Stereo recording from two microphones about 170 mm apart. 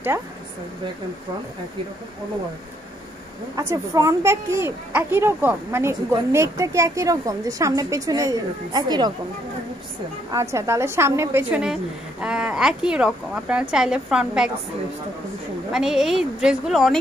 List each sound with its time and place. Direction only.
3.5 s a woman's voice: 20° right (ahead or behind)
10.3 s a woman's voice: 20° right (ahead or behind)
11.6 s speech: 5° right (ahead or behind)
15.7 s speech: 5° right (ahead or behind)